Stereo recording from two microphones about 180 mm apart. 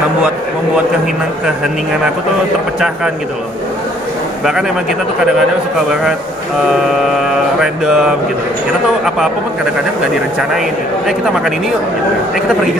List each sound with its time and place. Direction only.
6.7 s mantra: centre (ahead or behind)